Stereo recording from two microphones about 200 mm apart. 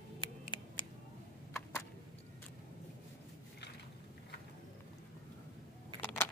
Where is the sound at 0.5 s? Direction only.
25° left (ahead or behind).